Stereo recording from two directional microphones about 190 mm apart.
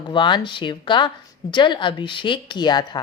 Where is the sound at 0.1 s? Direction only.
25° left (ahead or behind).